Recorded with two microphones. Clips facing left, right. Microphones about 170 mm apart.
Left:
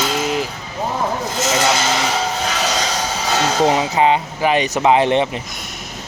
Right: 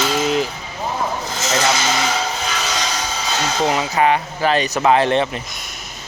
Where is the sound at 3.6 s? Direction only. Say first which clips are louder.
Even; 20° left (ahead or behind).